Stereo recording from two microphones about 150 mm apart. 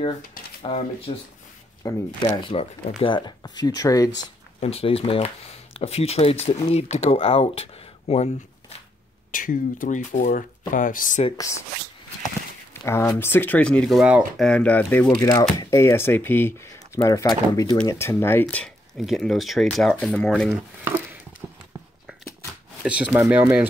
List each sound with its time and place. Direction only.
0.6 s speech: 40° left (ahead or behind)
1.8 s speech: 25° left (ahead or behind)
4.6 s speech: 40° left (ahead or behind)
9.3 s speech: 65° left (ahead or behind)
11.3 s speech: 20° left (ahead or behind)
12.8 s speech: 15° left (ahead or behind); by 14.4 s 5° right (ahead or behind)
14.4 s speech: 10° left (ahead or behind)
15.1 s speech: 25° left (ahead or behind)
17.0 s speech: 25° left (ahead or behind); by 20.5 s 5° left (ahead or behind)
21.4 s clip-clop: 10° right (ahead or behind)
22.8 s speech: 10° right (ahead or behind)